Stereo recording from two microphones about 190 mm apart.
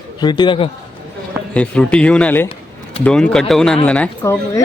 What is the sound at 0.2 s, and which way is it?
Speech, 25° left (ahead or behind).